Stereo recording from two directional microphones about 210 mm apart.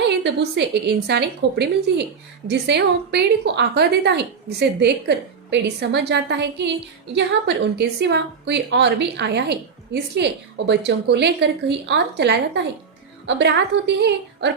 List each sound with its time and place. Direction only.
0.0 s a woman's voice: 55° right (ahead or behind)